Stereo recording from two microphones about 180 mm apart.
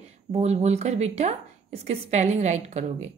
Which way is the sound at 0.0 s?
35° right (ahead or behind).